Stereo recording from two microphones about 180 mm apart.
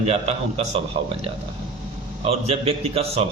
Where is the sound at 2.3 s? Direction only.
35° right (ahead or behind).